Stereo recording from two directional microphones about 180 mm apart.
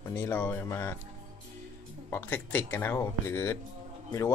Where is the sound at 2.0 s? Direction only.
10° left (ahead or behind).